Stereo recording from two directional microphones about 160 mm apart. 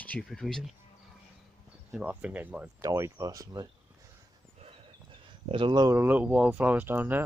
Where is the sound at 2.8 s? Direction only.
20° right (ahead or behind).